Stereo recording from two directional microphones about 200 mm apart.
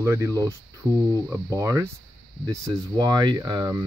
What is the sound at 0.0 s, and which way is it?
Speech, 15° right (ahead or behind).